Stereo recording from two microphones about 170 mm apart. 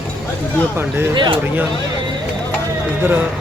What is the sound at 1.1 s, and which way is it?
Speech, 25° right (ahead or behind).